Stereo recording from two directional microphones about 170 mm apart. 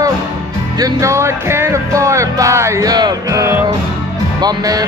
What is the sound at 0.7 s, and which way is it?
Music, 20° right (ahead or behind).